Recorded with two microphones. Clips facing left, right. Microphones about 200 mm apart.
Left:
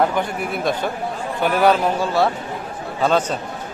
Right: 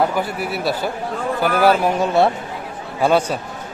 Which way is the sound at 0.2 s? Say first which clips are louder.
Even; 5° right (ahead or behind).